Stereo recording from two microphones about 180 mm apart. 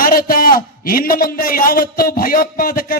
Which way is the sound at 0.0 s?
55° left (ahead or behind).